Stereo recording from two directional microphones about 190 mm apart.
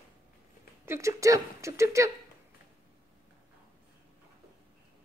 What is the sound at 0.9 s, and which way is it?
Speech, 15° right (ahead or behind).